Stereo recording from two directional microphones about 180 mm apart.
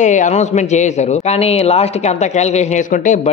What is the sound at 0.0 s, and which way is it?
A man's voice, 40° left (ahead or behind).